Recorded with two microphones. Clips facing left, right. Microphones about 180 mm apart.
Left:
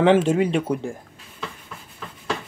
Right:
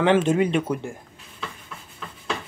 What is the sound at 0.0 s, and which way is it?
Speech, 30° left (ahead or behind).